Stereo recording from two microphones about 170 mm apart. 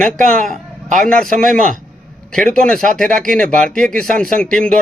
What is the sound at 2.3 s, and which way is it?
Speech, 5° left (ahead or behind).